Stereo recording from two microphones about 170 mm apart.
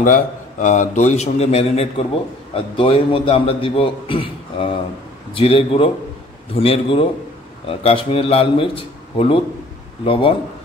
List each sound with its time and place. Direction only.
0.0 s a man's voice: 50° left (ahead or behind); by 10.3 s 30° left (ahead or behind)